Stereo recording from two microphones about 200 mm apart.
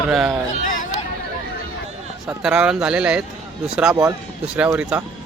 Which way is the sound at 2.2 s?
5° right (ahead or behind).